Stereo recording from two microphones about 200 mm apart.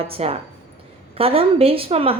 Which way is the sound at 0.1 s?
30° right (ahead or behind).